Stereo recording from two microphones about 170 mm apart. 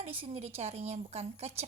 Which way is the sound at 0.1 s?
35° right (ahead or behind).